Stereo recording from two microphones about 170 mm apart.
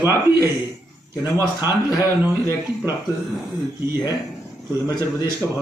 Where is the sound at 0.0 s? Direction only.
15° right (ahead or behind).